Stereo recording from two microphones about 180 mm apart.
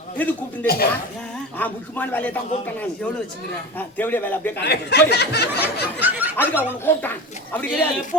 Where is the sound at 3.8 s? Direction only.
10° left (ahead or behind).